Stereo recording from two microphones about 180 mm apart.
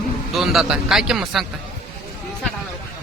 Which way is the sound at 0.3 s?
Centre (ahead or behind).